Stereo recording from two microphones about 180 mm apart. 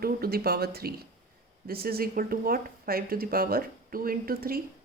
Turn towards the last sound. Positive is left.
turn(degrees=-55)  # may be behind; listen again after turning